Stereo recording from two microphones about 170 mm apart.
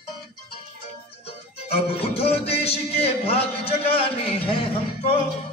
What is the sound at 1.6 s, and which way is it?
Music, 35° left (ahead or behind).